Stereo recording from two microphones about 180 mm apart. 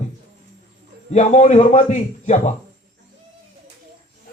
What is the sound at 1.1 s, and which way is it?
Speech, 40° left (ahead or behind).